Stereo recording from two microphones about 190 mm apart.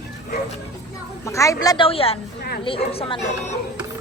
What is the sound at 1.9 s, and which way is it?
A woman's voice, 30° left (ahead or behind).